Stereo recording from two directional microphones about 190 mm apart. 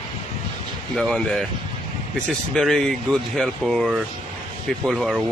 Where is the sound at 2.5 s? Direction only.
5° left (ahead or behind).